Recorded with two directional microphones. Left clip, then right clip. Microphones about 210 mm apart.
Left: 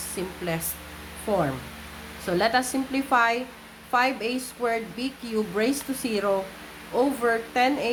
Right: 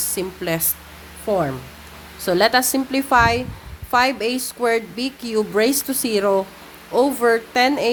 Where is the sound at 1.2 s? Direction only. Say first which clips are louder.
Right 5 dB; 40° right (ahead or behind).